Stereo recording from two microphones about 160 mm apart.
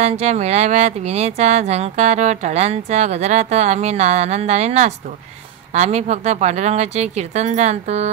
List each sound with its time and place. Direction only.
0.0 s speech: 45° right (ahead or behind)